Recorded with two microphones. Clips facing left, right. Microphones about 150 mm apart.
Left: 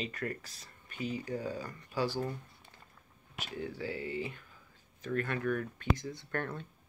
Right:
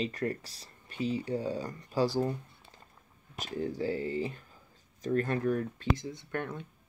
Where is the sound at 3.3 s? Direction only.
40° right (ahead or behind); by 6.7 s 15° right (ahead or behind).